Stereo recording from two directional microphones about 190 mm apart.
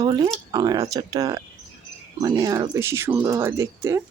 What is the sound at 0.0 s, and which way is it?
Speech, 25° right (ahead or behind).